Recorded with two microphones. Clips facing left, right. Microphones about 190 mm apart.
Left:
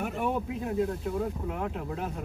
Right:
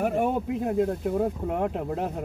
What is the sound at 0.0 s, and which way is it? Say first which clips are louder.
Speech: right 5 dB; 50° right (ahead or behind).